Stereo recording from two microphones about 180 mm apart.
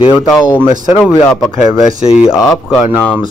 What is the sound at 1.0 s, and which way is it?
Speech, 10° left (ahead or behind).